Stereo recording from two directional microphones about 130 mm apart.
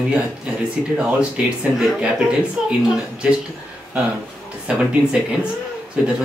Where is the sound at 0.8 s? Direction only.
5° right (ahead or behind).